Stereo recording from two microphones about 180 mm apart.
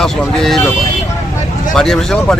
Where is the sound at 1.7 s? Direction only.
Centre (ahead or behind).